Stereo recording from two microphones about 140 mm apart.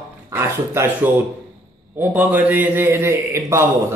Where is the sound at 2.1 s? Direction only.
10° right (ahead or behind).